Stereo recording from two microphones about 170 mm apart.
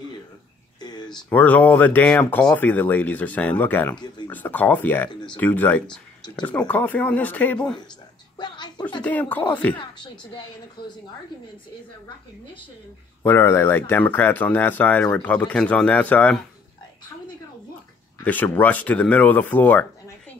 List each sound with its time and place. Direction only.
0.7 s a sound: 25° left (ahead or behind)
1.1 s speech: 10° left (ahead or behind)
8.4 s a sound: 25° left (ahead or behind)
9.0 s speech: 10° left (ahead or behind)
10.8 s a woman's voice: 25° left (ahead or behind)
13.2 s speech: 15° left (ahead or behind)
18.2 s speech: 10° left (ahead or behind)